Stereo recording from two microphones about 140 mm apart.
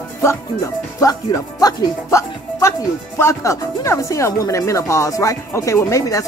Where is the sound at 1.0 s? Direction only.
25° left (ahead or behind).